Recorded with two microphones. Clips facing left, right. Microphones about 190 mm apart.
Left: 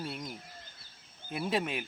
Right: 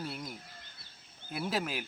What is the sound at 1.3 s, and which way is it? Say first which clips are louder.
Speech: left 2 dB; centre (ahead or behind).